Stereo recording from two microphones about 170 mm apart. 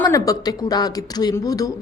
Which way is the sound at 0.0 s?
20° left (ahead or behind).